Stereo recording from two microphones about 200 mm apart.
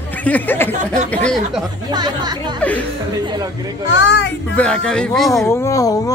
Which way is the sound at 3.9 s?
60° left (ahead or behind).